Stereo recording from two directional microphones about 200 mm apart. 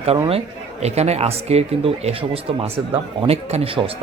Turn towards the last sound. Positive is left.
turn(degrees=-25)  # may be behind; listen again after turning